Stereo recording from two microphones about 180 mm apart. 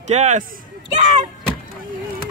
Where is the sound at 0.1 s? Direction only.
40° right (ahead or behind).